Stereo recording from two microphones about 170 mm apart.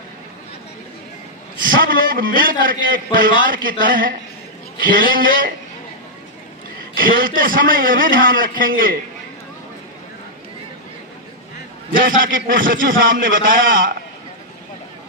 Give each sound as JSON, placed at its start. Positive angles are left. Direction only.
{"t": 1.8, "sound": "a man's voice", "side_deg": -55}
{"t": 2.9, "sound": "a man's voice", "side_deg": -75}
{"t": 7.0, "sound": "a man's voice", "side_deg": -55}
{"t": 11.9, "sound": "a man's voice", "side_deg": -55}